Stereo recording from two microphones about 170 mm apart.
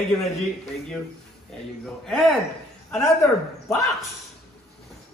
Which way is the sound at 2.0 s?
Centre (ahead or behind).